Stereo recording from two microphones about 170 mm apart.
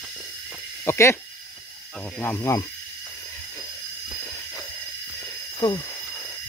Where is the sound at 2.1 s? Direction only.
10° left (ahead or behind).